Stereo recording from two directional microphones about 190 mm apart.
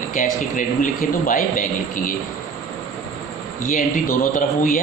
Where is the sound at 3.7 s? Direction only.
45° left (ahead or behind).